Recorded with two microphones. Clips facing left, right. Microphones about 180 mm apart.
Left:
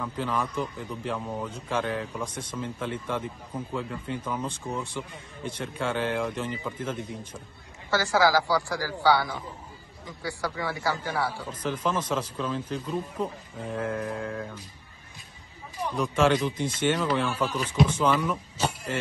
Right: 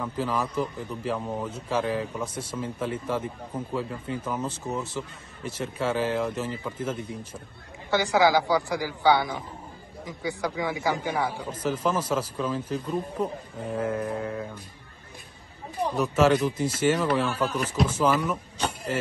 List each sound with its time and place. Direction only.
0.0 s a man's voice: 10° right (ahead or behind)
7.9 s speech: 20° right (ahead or behind)
11.6 s a man's voice: 10° right (ahead or behind)
16.0 s a man's voice: 5° right (ahead or behind)